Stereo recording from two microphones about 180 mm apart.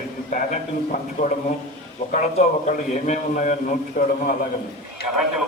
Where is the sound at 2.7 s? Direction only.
45° left (ahead or behind).